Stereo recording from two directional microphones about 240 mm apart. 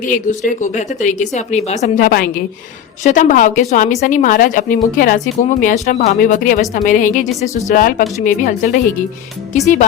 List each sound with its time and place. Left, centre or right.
0.0 s a woman's voice: left